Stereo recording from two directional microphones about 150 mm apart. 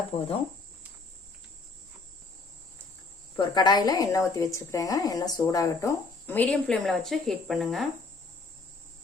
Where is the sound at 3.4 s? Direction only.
30° left (ahead or behind); by 7.9 s centre (ahead or behind).